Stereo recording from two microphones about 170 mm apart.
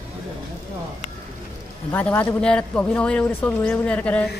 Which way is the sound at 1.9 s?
10° left (ahead or behind).